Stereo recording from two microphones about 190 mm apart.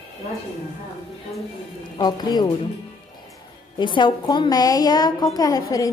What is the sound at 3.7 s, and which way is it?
A woman's voice, 25° left (ahead or behind).